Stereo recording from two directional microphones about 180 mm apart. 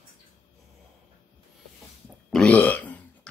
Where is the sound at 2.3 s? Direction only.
5° left (ahead or behind).